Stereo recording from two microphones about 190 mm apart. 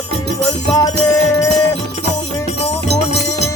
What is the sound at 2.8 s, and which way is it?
Music, 60° right (ahead or behind).